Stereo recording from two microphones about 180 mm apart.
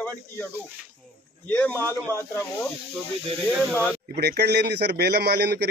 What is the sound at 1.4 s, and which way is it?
Speech, 10° left (ahead or behind).